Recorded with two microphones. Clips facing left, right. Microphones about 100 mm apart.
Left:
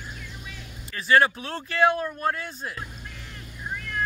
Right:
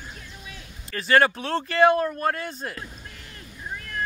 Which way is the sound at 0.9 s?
55° right (ahead or behind).